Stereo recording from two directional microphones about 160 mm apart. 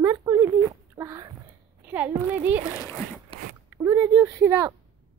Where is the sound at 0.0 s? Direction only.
20° right (ahead or behind).